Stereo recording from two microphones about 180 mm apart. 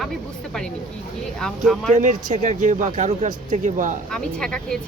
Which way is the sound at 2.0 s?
45° right (ahead or behind).